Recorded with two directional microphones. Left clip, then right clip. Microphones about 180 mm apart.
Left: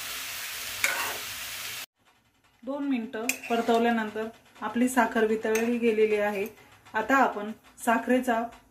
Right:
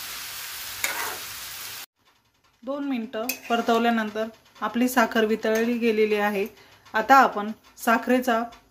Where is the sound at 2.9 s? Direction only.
35° right (ahead or behind).